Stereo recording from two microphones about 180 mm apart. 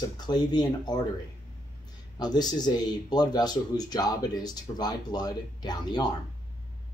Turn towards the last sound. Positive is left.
turn(degrees=25)  # may be behind; listen again after turning